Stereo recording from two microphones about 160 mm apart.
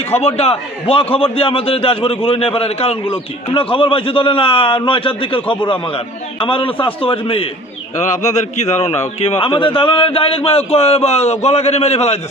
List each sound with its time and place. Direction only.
0.2 s a man's voice: 40° left (ahead or behind)
7.9 s a man's voice: 45° left (ahead or behind)